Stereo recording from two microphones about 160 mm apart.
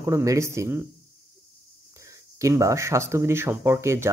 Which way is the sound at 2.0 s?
20° right (ahead or behind).